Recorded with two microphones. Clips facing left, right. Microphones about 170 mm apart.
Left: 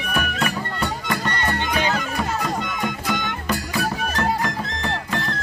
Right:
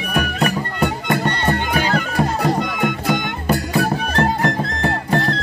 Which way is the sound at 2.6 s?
55° right (ahead or behind).